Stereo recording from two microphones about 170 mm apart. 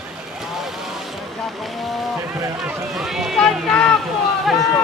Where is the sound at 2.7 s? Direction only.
Centre (ahead or behind).